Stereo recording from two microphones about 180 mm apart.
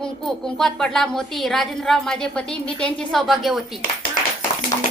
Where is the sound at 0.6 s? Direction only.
5° left (ahead or behind).